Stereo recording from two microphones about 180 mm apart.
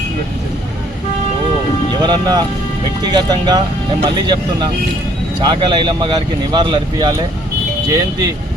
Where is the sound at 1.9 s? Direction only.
25° right (ahead or behind).